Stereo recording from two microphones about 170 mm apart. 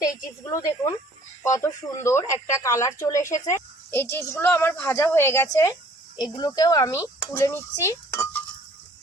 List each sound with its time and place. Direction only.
0.5 s speech: 20° left (ahead or behind)